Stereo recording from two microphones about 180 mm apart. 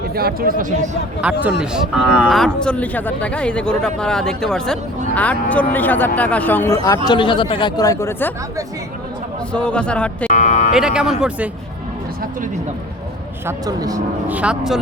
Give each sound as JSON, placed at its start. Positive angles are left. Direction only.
{"t": 0.1, "sound": "speech", "side_deg": -60}
{"t": 1.2, "sound": "speech", "side_deg": -10}
{"t": 7.1, "sound": "speech", "side_deg": 25}
{"t": 9.5, "sound": "speech", "side_deg": 5}
{"t": 10.2, "sound": "speech", "side_deg": 45}
{"t": 10.8, "sound": "speech", "side_deg": -5}
{"t": 13.7, "sound": "speech", "side_deg": -20}
{"t": 14.3, "sound": "speech", "side_deg": -5}